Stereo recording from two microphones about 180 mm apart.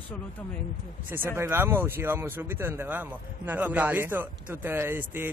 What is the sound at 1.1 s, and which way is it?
Speech, 15° right (ahead or behind).